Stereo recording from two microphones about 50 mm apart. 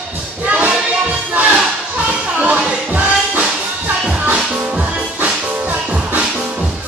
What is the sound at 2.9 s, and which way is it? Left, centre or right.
Music, right.